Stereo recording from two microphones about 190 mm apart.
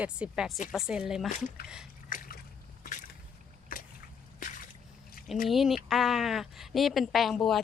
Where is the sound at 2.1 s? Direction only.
50° left (ahead or behind).